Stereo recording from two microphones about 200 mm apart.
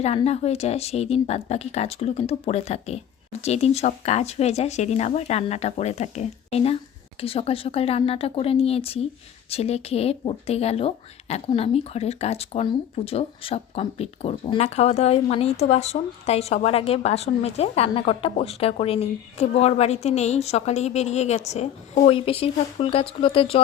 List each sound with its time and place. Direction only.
0.0 s speech: 30° left (ahead or behind)